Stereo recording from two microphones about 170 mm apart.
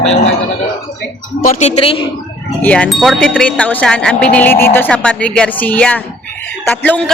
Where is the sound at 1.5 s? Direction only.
45° left (ahead or behind).